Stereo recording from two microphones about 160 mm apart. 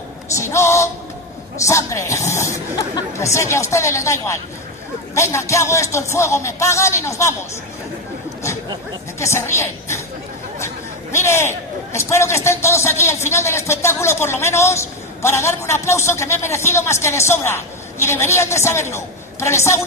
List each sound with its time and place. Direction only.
0.4 s speech: 15° left (ahead or behind)
9.2 s speech: 15° left (ahead or behind)